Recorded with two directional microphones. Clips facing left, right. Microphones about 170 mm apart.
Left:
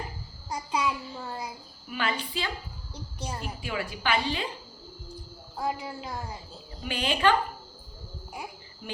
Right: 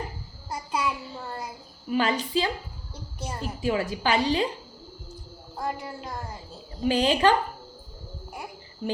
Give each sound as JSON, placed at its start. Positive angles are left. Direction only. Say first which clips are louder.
{"t": 0.5, "sound": "child singing", "louder": "even", "side_deg": -5}
{"t": 1.9, "sound": "a woman's voice", "louder": "right 7 dB", "side_deg": -40}
{"t": 2.9, "sound": "a child's voice", "louder": "right 1 dB", "side_deg": -5}
{"t": 3.4, "sound": "a woman's voice", "louder": "right 10 dB", "side_deg": -35}
{"t": 5.5, "sound": "speech", "louder": "even", "side_deg": 5}
{"t": 6.8, "sound": "a woman's voice", "louder": "right 5 dB", "side_deg": -40}